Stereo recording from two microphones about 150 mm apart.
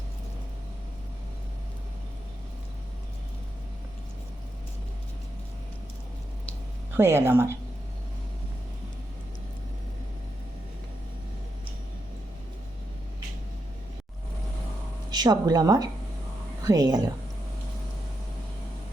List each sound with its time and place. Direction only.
6.9 s speech: 15° right (ahead or behind)
15.1 s a woman's voice: 25° right (ahead or behind)